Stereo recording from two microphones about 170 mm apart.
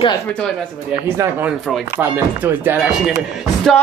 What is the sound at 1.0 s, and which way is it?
Speech, 15° right (ahead or behind).